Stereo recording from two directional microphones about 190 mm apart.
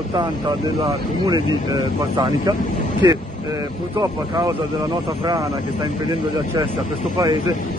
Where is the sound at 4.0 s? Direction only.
20° right (ahead or behind).